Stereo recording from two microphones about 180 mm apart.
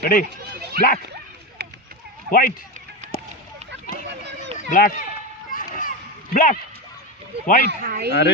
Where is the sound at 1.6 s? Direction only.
60° right (ahead or behind).